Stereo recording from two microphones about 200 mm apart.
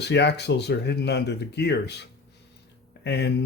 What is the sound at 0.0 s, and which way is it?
Speech, 60° left (ahead or behind).